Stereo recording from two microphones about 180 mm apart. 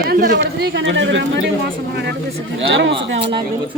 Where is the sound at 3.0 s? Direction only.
80° right.